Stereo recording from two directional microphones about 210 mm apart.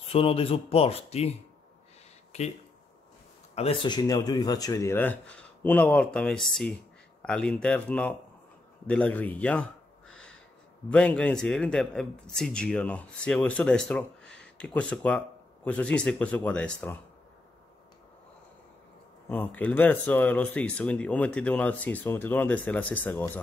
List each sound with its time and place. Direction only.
0.1 s speech: 25° left (ahead or behind)
2.3 s speech: 30° left (ahead or behind)
3.5 s a man's voice: 25° left (ahead or behind); by 9.7 s 5° left (ahead or behind)
10.9 s a man's voice: 5° left (ahead or behind)
19.2 s speech: 10° left (ahead or behind)